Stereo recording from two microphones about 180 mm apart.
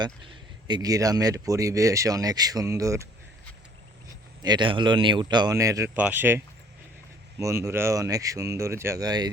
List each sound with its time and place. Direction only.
0.7 s speech: 20° right (ahead or behind)
4.4 s speech: 25° right (ahead or behind)